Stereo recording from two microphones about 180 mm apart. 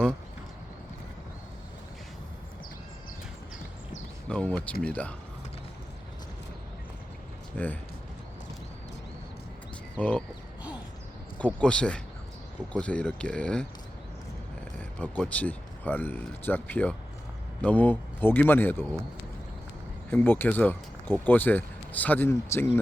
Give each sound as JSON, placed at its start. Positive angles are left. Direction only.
{"t": 4.3, "sound": "speech", "side_deg": 5}
{"t": 7.5, "sound": "speech", "side_deg": 10}
{"t": 10.0, "sound": "speech", "side_deg": 10}
{"t": 11.3, "sound": "speech", "side_deg": 5}
{"t": 14.8, "sound": "speech", "side_deg": 10}
{"t": 20.1, "sound": "speech", "side_deg": 10}